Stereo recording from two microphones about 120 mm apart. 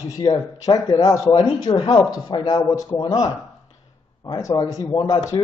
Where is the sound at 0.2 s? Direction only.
35° left (ahead or behind).